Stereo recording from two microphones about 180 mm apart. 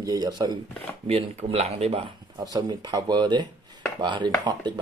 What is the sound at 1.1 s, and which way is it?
Speech, 35° right (ahead or behind).